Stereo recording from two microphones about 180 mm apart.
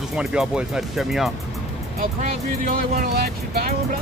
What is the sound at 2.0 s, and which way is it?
Speech, 50° right (ahead or behind).